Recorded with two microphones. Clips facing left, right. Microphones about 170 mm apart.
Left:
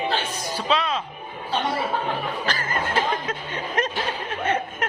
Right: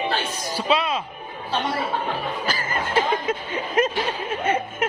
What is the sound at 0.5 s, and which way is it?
Speech, 10° right (ahead or behind).